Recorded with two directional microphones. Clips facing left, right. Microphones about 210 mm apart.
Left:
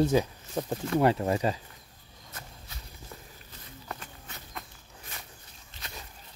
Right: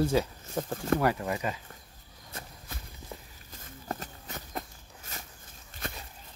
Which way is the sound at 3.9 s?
40° right (ahead or behind).